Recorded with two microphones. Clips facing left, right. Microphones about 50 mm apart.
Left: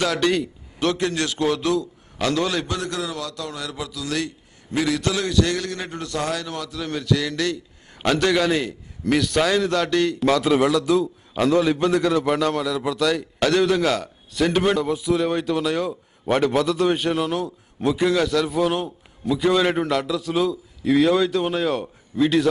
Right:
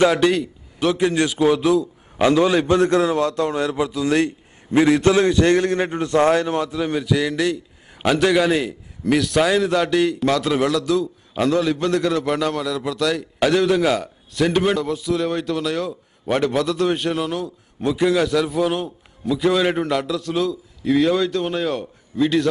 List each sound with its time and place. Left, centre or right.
0.0 s a man's voice: centre
0.3 s a man's voice: centre
2.7 s a man's voice: right; by 22.5 s centre